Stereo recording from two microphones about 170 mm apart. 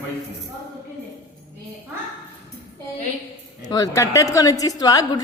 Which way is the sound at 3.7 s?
20° left (ahead or behind).